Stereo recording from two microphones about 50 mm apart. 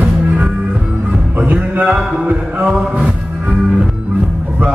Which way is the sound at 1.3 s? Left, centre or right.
Right.